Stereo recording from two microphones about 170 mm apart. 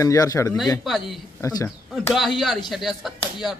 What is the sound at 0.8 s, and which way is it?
Speech, centre (ahead or behind).